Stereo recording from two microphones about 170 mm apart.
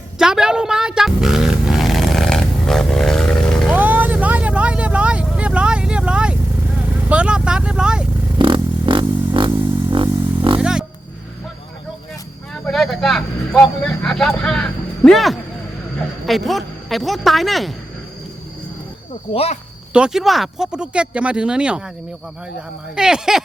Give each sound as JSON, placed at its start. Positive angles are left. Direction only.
{"t": 0.2, "sound": "a sound", "side_deg": -5}
{"t": 3.8, "sound": "vehicle", "side_deg": -10}
{"t": 8.4, "sound": "music", "side_deg": -30}
{"t": 9.9, "sound": "a sound", "side_deg": -30}
{"t": 10.6, "sound": "roaring cats", "side_deg": -5}
{"t": 12.6, "sound": "speech", "side_deg": 0}
{"t": 19.3, "sound": "speech", "side_deg": 35}
{"t": 19.9, "sound": "speech", "side_deg": -5}
{"t": 23.0, "sound": "speech", "side_deg": -5}